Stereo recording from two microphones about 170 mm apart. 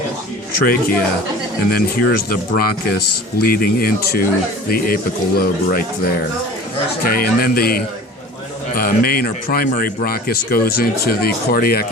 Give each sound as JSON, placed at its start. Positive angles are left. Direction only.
{"t": 0.6, "sound": "speech", "side_deg": 60}